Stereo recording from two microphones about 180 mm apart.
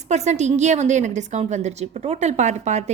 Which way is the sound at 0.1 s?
40° right (ahead or behind).